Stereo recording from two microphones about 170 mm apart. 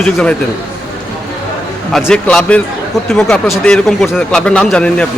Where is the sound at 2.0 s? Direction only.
5° left (ahead or behind).